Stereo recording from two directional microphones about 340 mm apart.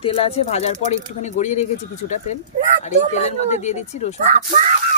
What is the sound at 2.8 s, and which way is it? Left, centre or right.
Speech, centre.